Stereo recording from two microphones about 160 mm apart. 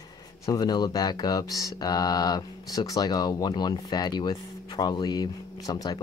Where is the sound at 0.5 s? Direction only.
25° left (ahead or behind).